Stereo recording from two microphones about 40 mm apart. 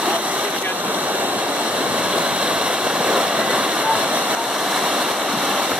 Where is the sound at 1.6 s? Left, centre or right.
Right.